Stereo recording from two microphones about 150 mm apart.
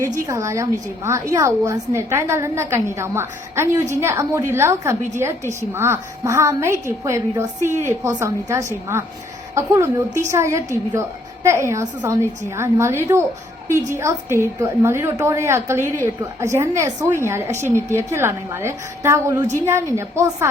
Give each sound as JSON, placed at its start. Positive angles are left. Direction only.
{"t": 0.3, "sound": "a woman's voice", "side_deg": -20}
{"t": 15.8, "sound": "a woman's voice", "side_deg": 15}
{"t": 16.4, "sound": "a woman's voice", "side_deg": -20}